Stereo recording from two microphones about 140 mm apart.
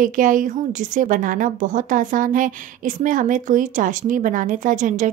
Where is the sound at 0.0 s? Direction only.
70° right (ahead or behind).